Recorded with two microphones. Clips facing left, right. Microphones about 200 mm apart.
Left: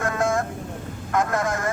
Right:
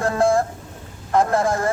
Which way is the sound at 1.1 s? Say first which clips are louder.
Right 5 dB; 30° right (ahead or behind).